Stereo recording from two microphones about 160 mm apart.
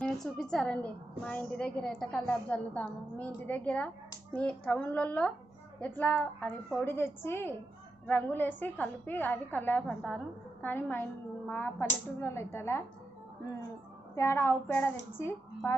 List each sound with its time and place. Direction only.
0.0 s a woman's voice: 5° left (ahead or behind)
14.2 s a woman's voice: 15° left (ahead or behind)